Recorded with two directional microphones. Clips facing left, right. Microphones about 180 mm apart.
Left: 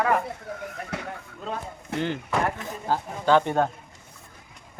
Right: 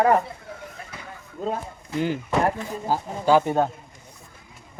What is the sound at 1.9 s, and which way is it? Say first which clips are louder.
Speech: right 3 dB; 70° left (ahead or behind).